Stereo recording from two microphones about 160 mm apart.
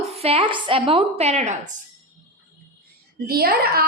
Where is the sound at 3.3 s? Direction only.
75° right (ahead or behind).